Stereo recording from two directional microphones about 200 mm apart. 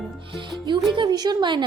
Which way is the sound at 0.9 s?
20° right (ahead or behind).